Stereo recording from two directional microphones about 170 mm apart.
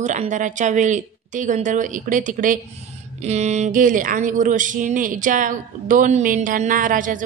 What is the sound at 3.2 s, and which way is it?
Speech, 40° right (ahead or behind).